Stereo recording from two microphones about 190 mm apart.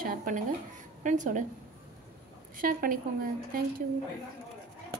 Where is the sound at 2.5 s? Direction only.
50° right (ahead or behind).